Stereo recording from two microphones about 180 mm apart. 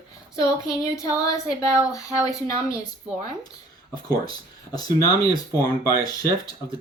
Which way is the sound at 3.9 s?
20° left (ahead or behind).